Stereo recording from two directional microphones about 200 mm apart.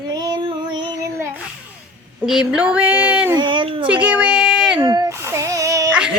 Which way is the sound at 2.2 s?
5° right (ahead or behind).